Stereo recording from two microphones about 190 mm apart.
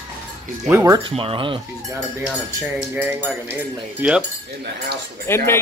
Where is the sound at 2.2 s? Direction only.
10° right (ahead or behind).